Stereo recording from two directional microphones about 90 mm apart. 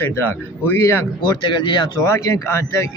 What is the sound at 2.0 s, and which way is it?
Speech, 35° left (ahead or behind).